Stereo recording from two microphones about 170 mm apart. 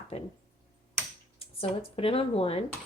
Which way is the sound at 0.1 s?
35° left (ahead or behind).